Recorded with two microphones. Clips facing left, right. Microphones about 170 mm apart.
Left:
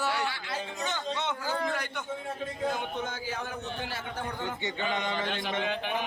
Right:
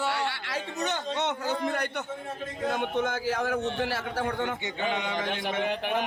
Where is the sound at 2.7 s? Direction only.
70° right (ahead or behind).